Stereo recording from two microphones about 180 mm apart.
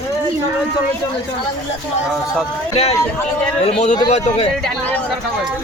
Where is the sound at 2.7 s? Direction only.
35° left (ahead or behind).